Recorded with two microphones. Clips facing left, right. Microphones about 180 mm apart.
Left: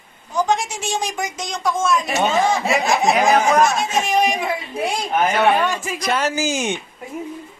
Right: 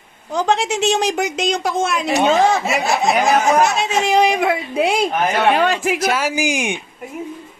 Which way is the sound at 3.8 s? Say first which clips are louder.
Right 3 dB; 70° right (ahead or behind).